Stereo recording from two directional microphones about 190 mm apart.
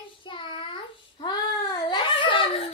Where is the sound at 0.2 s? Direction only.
25° left (ahead or behind).